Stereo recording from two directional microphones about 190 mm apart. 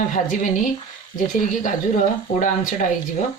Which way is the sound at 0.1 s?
40° left (ahead or behind).